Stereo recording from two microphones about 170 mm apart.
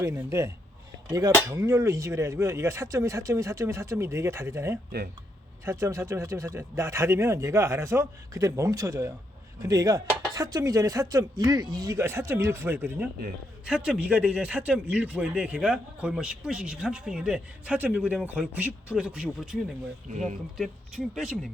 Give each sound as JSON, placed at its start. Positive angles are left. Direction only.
{"t": 0.0, "sound": "a man's voice", "side_deg": -15}
{"t": 20.6, "sound": "a man's voice", "side_deg": -5}